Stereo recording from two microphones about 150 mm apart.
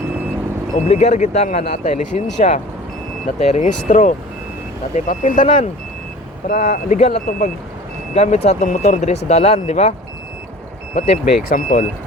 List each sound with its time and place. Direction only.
0.9 s speech: 50° left (ahead or behind)
8.1 s speech: 45° left (ahead or behind)
10.9 s speech: 45° left (ahead or behind)
11.4 s speech: 60° left (ahead or behind)